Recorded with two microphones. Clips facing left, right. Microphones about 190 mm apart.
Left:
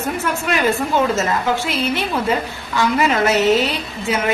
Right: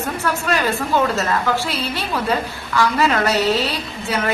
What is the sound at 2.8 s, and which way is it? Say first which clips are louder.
A woman's voice: left 1 dB; 20° left (ahead or behind).